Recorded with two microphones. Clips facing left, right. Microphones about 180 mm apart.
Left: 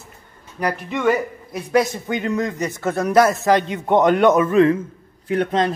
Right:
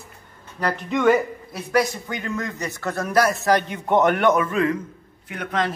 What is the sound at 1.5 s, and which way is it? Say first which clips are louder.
A man's voice: left 3 dB; 20° left (ahead or behind).